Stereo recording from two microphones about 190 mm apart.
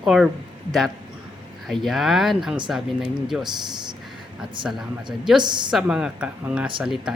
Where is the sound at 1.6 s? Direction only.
Centre (ahead or behind).